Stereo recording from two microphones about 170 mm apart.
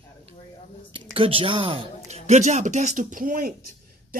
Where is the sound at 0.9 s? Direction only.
30° right (ahead or behind).